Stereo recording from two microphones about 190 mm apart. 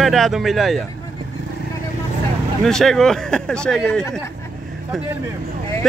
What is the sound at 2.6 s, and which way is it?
Speech, centre (ahead or behind).